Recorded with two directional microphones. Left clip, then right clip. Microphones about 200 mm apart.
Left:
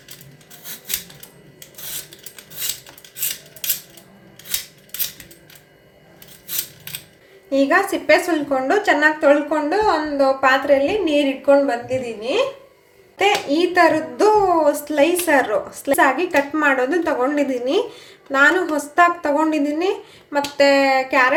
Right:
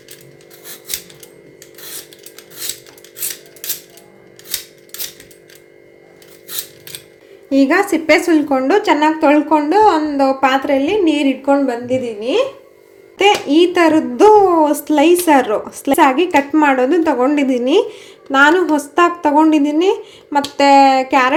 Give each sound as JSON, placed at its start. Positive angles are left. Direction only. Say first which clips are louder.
{"t": 7.5, "sound": "a woman's voice", "louder": "right 3 dB", "side_deg": -35}